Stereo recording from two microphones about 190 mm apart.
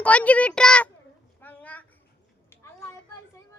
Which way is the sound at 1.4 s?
10° left (ahead or behind).